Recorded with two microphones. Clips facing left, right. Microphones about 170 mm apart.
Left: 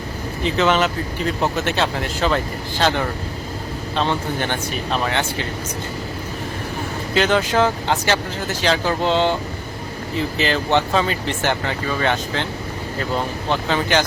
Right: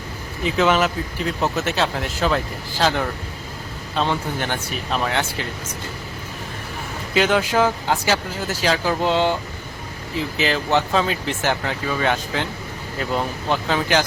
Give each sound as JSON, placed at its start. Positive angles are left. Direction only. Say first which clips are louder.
{"t": 0.4, "sound": "speech", "louder": "even", "side_deg": -5}
{"t": 7.1, "sound": "speech", "louder": "even", "side_deg": -5}